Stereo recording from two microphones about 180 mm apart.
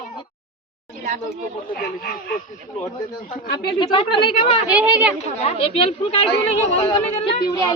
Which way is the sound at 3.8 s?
25° left (ahead or behind).